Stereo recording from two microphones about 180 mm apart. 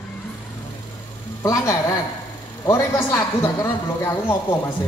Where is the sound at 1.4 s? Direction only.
15° left (ahead or behind).